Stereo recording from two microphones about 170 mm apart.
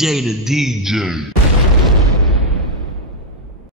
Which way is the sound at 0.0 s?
Centre (ahead or behind).